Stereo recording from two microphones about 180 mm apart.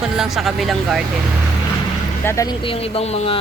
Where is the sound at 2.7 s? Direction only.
35° left (ahead or behind).